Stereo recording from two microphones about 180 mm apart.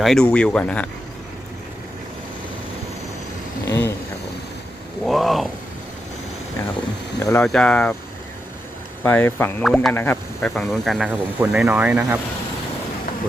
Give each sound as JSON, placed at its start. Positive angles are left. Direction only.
{"t": 0.0, "sound": "speech", "side_deg": 0}
{"t": 3.7, "sound": "a sound", "side_deg": 15}
{"t": 5.0, "sound": "a sound", "side_deg": 0}
{"t": 7.2, "sound": "speech", "side_deg": 20}
{"t": 7.4, "sound": "speech", "side_deg": 5}
{"t": 9.0, "sound": "speech", "side_deg": 10}